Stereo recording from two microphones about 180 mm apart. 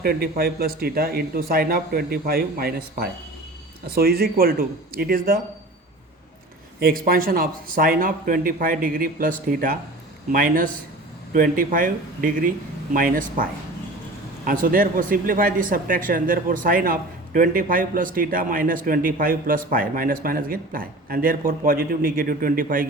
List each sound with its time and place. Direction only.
0.0 s speech: 60° right (ahead or behind)
6.7 s speech: 55° right (ahead or behind)